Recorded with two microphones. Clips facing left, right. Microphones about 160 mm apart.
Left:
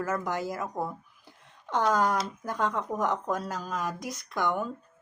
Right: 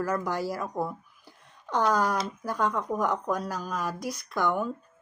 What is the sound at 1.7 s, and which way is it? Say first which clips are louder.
Speech: even; 20° left (ahead or behind).